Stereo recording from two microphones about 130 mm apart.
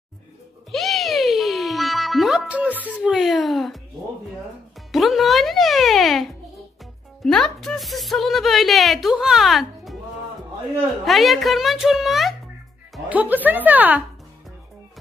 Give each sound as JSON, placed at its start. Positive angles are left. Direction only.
{"t": 0.7, "sound": "music", "side_deg": 0}
{"t": 3.0, "sound": "a child's voice", "side_deg": -5}
{"t": 4.7, "sound": "music", "side_deg": 0}
{"t": 7.2, "sound": "a woman's voice", "side_deg": 5}
{"t": 11.1, "sound": "a woman's voice", "side_deg": 0}
{"t": 13.1, "sound": "speech", "side_deg": -10}